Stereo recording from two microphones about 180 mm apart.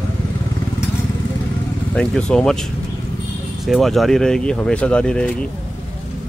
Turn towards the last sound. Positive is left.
turn(degrees=5)  # may be behind; listen again after turning